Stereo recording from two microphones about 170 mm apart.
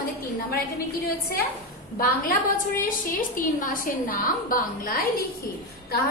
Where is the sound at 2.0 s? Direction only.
55° left (ahead or behind).